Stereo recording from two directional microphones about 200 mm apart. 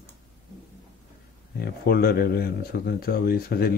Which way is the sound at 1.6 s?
50° left (ahead or behind).